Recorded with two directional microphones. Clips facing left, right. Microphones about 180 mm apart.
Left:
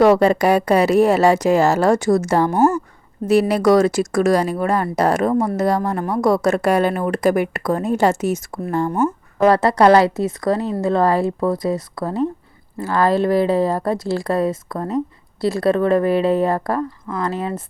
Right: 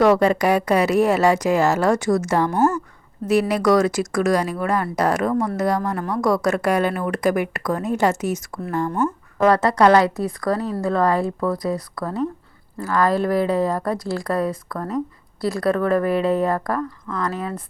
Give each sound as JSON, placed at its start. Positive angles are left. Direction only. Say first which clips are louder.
{"t": 0.0, "sound": "a woman's voice", "louder": "left 3 dB", "side_deg": 30}
{"t": 2.5, "sound": "a woman's voice", "louder": "left 3 dB", "side_deg": 10}
{"t": 3.2, "sound": "speech", "louder": "left 3 dB", "side_deg": 30}